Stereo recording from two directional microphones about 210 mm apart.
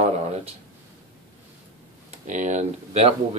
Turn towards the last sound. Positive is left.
turn(degrees=-30)  # may be behind; listen again after turning